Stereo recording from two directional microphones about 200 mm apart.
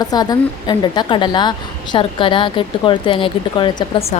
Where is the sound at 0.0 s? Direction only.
20° left (ahead or behind).